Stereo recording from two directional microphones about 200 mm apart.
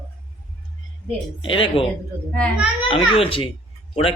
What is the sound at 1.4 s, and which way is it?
Speech, 25° left (ahead or behind).